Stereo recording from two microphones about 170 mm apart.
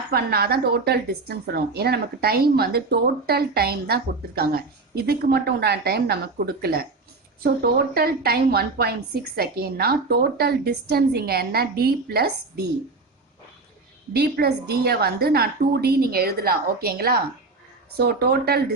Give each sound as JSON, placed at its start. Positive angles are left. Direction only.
{"t": 0.1, "sound": "a woman's voice", "side_deg": -65}
{"t": 14.1, "sound": "a woman's voice", "side_deg": -70}
{"t": 17.9, "sound": "a woman's voice", "side_deg": -75}